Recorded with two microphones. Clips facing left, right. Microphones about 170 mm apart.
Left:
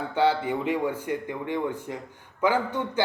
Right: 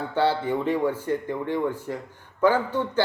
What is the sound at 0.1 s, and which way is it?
Speech, 15° left (ahead or behind).